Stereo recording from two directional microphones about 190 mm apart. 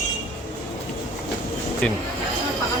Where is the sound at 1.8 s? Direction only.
5° left (ahead or behind).